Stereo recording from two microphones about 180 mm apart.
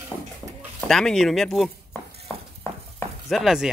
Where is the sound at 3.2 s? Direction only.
Centre (ahead or behind).